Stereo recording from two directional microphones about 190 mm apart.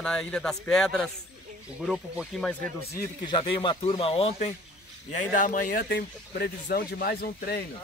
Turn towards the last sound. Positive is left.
turn(degrees=55)  # may be behind; listen again after turning